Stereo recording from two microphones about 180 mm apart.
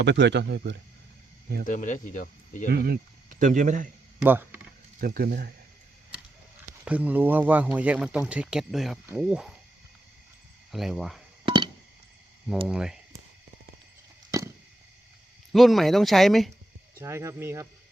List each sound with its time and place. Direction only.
0.0 s speech: 80° right
1.6 s speech: 45° left (ahead or behind)
2.6 s speech: 60° right (ahead or behind); by 3.8 s 45° right (ahead or behind)
4.2 s speech: 10° right (ahead or behind)
4.9 s speech: 55° right (ahead or behind)
6.8 s speech: 10° right (ahead or behind)
10.7 s speech: centre (ahead or behind)
11.4 s a sound: 25° right (ahead or behind)
12.6 s speech: 5° right (ahead or behind)
14.3 s a sound: 15° right (ahead or behind)
15.5 s speech: centre (ahead or behind)
17.0 s speech: 15° right (ahead or behind)